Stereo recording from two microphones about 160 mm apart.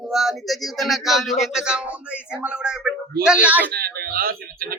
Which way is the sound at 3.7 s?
70° right (ahead or behind).